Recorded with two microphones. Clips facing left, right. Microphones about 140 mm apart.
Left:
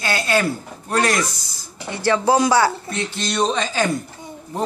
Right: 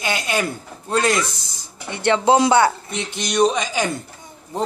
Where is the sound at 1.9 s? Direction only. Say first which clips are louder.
Right 1 dB; 20° right (ahead or behind).